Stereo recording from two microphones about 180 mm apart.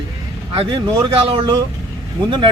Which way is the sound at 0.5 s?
25° right (ahead or behind).